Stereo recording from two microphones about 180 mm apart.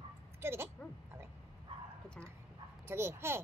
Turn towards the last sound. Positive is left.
turn(degrees=-15)  # may be behind; listen again after turning